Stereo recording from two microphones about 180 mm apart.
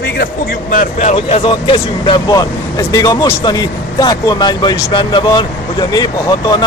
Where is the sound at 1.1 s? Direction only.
30° left (ahead or behind).